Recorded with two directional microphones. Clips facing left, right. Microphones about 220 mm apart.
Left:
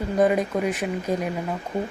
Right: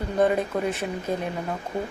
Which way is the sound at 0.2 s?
15° left (ahead or behind).